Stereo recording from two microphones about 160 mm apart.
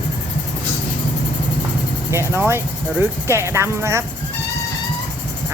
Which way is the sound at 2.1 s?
15° right (ahead or behind).